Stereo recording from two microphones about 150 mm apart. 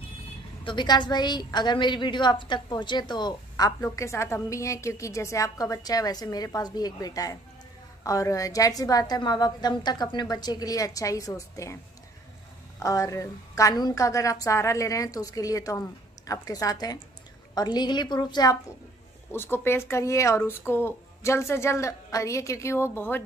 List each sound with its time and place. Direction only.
0.7 s a woman's voice: 30° left (ahead or behind)
19.3 s speech: 15° left (ahead or behind)